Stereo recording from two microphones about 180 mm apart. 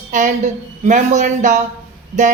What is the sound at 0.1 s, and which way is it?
A woman's voice, 45° right (ahead or behind).